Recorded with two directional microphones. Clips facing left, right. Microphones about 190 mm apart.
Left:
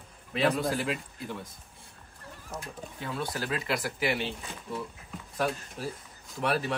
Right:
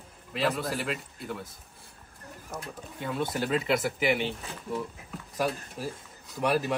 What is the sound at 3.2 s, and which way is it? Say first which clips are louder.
Speech: right 5 dB; 25° right (ahead or behind).